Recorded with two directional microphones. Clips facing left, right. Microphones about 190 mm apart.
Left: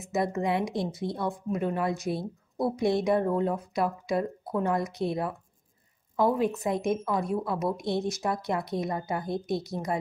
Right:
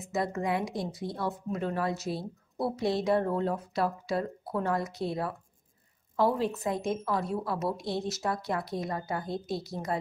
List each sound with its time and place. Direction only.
0.1 s a woman's voice: 20° left (ahead or behind)
6.3 s a woman's voice: 15° left (ahead or behind)